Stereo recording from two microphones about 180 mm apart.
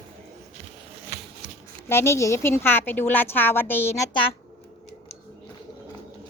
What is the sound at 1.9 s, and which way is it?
A woman's voice, 15° left (ahead or behind).